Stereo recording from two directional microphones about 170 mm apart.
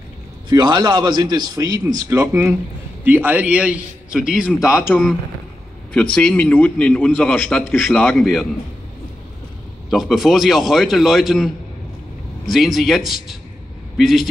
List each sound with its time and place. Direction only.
0.5 s a man's voice: 25° right (ahead or behind); by 4.5 s 5° right (ahead or behind)
4.6 s speech: 15° left (ahead or behind)
5.9 s speech: 5° left (ahead or behind)
8.1 s a man's voice: centre (ahead or behind)
9.8 s a man's voice: centre (ahead or behind)